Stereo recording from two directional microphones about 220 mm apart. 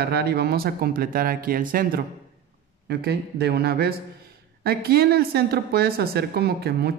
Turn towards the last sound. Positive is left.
turn(degrees=-45)  # may be behind; listen again after turning